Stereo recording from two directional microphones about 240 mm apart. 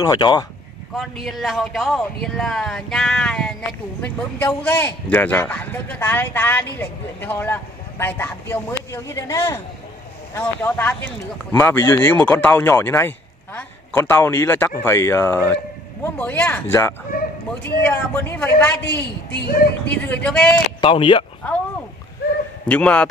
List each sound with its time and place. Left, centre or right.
0.0 s a man's voice: centre
0.9 s a man's voice: centre
17.1 s a sound: left
17.8 s a man's voice: centre
20.8 s speech: left
22.7 s speech: centre